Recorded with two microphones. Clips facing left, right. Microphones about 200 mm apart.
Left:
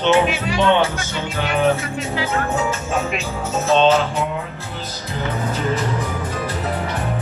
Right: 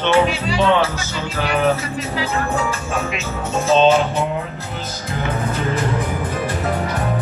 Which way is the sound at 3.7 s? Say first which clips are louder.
Right 1 dB; 5° right (ahead or behind).